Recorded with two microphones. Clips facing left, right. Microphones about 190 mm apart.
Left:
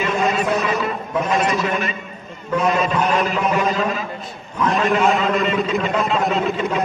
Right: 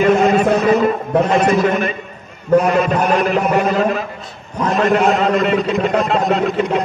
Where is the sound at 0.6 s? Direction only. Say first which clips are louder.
Right 8 dB; 40° right (ahead or behind).